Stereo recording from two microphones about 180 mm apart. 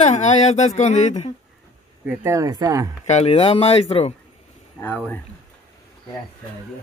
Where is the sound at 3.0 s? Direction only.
35° left (ahead or behind).